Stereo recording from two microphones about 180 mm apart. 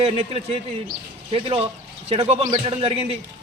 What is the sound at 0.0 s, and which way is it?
A man's voice, 30° right (ahead or behind).